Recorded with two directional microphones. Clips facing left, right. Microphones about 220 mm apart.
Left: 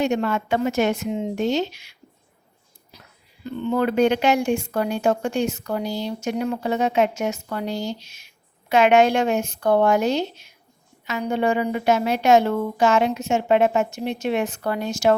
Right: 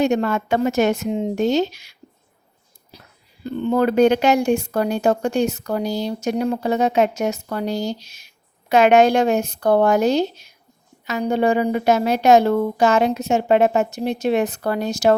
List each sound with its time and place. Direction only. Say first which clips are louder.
0.0 s speech: right 3 dB; 40° right (ahead or behind)
3.4 s speech: right 3 dB; 40° right (ahead or behind)